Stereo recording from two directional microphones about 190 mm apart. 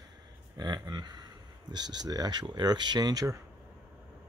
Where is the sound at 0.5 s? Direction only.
20° right (ahead or behind).